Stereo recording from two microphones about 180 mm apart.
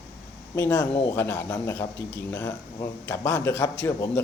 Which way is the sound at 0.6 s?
15° left (ahead or behind).